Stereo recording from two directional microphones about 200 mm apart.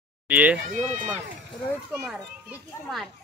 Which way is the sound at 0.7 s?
40° right (ahead or behind).